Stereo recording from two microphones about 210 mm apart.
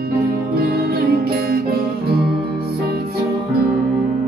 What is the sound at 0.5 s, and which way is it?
Music, 50° right (ahead or behind).